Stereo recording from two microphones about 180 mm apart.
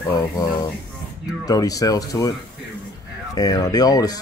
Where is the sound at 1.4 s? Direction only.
20° left (ahead or behind).